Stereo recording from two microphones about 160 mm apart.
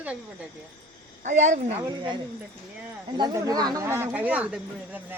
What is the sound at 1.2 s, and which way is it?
Speech, 50° right (ahead or behind).